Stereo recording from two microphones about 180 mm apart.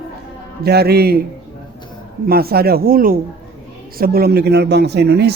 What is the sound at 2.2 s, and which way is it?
Speech, 55° right (ahead or behind).